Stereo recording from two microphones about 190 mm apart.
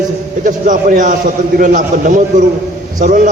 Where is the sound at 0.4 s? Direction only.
45° right (ahead or behind).